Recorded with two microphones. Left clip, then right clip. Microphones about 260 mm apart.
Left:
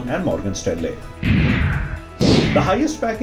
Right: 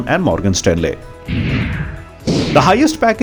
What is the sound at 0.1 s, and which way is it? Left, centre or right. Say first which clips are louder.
Speech: right 7 dB; right.